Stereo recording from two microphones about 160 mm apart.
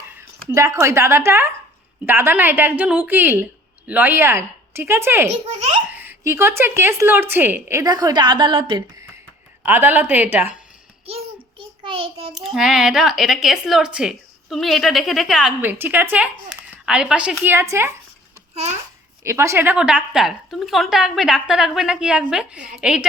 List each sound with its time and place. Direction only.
0.4 s a woman's voice: 20° right (ahead or behind)
9.6 s a woman's voice: 10° right (ahead or behind)
11.8 s child singing: 35° right (ahead or behind)
12.3 s a woman's voice: centre (ahead or behind)
19.2 s speech: 15° right (ahead or behind)